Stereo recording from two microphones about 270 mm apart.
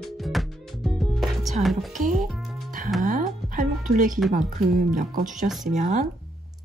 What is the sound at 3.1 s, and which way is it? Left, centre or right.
Music, right.